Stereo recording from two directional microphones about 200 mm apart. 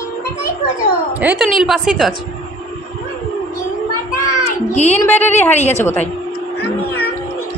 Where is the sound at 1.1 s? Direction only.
5° right (ahead or behind).